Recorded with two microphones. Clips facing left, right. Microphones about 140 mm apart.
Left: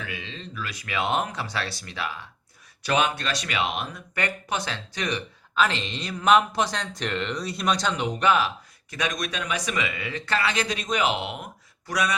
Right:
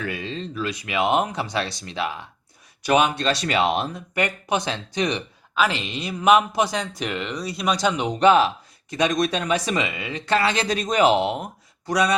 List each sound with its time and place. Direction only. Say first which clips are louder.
0.0 s speech: right 8 dB; 45° right (ahead or behind); by 3.2 s 15° right (ahead or behind)
3.2 s speech: right 7 dB; 30° right (ahead or behind)
4.1 s speech: right 5 dB; 15° right (ahead or behind)
5.5 s speech: right 2 dB; 5° right (ahead or behind)
7.9 s speech: right 6 dB; 20° right (ahead or behind)